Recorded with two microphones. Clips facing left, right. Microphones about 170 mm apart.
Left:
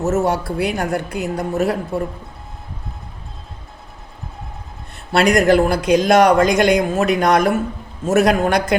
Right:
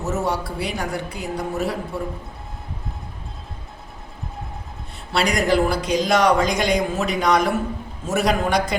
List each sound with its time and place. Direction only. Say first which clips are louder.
0.0 s speech: left 6 dB; 50° left (ahead or behind)
5.1 s speech: left 6 dB; 50° left (ahead or behind)